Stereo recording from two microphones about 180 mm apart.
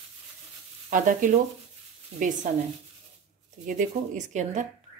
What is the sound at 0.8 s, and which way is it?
Speech, 45° right (ahead or behind).